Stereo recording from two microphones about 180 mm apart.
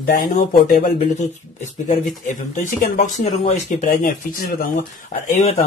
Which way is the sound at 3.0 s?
45° left (ahead or behind).